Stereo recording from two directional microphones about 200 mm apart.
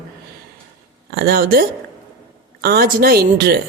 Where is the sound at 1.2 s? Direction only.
50° right (ahead or behind).